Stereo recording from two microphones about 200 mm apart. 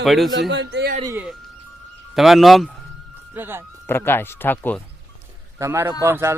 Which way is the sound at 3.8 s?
10° left (ahead or behind).